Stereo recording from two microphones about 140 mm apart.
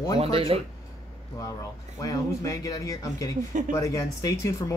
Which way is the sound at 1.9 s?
25° left (ahead or behind).